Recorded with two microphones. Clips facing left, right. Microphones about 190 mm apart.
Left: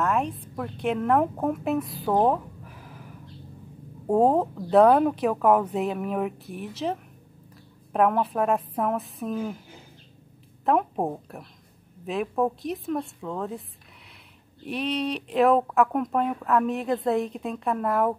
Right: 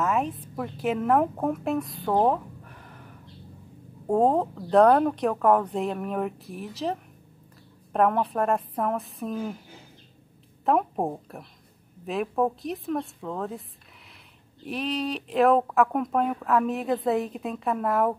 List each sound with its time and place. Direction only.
0.0 s a woman's voice: centre (ahead or behind)
10.6 s a woman's voice: centre (ahead or behind)
14.7 s speech: centre (ahead or behind)